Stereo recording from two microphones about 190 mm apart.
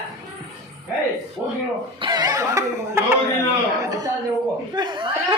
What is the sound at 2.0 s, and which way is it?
Speech, 20° right (ahead or behind).